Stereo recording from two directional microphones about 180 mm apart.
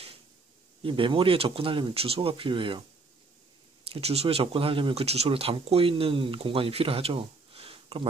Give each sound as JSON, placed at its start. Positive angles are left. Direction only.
{"t": 0.8, "sound": "speech", "side_deg": -30}
{"t": 3.9, "sound": "speech", "side_deg": -35}